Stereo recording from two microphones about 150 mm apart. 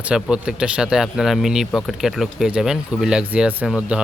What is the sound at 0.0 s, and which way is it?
Speech, 5° right (ahead or behind).